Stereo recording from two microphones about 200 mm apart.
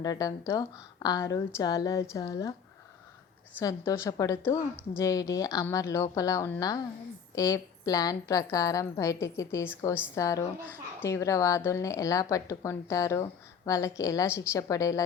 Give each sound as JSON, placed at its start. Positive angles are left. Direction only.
{"t": 0.0, "sound": "a woman's voice", "side_deg": 20}
{"t": 3.6, "sound": "a woman's voice", "side_deg": 15}